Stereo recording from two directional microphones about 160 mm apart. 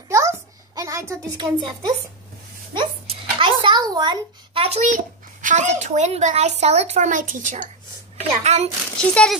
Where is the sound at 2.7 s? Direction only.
30° right (ahead or behind).